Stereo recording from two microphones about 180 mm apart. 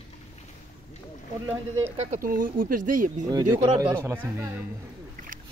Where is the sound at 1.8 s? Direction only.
35° right (ahead or behind).